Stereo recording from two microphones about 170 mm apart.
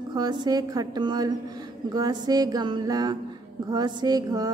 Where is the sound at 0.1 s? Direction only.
25° right (ahead or behind).